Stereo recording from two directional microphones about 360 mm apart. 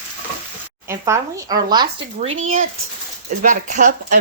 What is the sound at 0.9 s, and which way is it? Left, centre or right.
Speech, centre.